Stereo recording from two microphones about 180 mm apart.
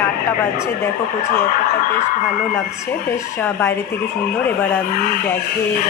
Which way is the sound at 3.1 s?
10° left (ahead or behind).